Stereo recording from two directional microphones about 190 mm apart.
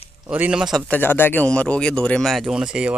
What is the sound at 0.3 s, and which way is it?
Speech, 5° right (ahead or behind).